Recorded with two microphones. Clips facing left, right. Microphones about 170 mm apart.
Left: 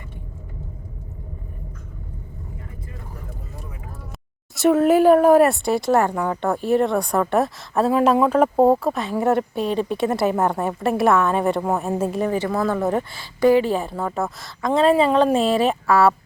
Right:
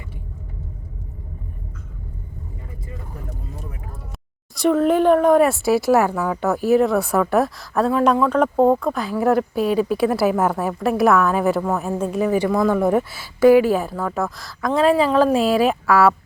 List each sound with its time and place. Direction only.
4.5 s a woman's voice: 5° left (ahead or behind)